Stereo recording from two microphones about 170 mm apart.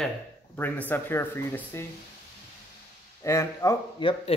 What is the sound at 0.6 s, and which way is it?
A man's voice, 10° left (ahead or behind).